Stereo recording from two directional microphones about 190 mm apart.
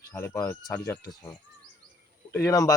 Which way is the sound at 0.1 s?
15° left (ahead or behind).